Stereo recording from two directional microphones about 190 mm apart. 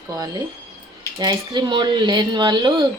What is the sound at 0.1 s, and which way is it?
Speech, 20° right (ahead or behind).